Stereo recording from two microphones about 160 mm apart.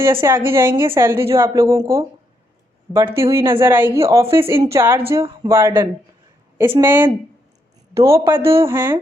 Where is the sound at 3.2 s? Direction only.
15° right (ahead or behind).